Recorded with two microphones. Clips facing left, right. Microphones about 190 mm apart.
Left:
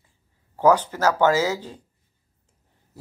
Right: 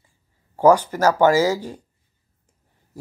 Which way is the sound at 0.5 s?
10° right (ahead or behind).